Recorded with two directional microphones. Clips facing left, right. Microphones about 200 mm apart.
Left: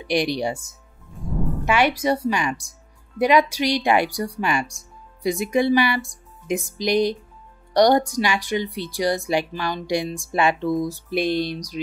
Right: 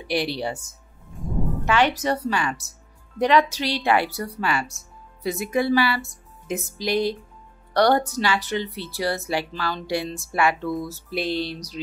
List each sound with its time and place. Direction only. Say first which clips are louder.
0.0 s speech: left 3 dB; 15° left (ahead or behind)
1.7 s speech: left 2 dB; 10° left (ahead or behind)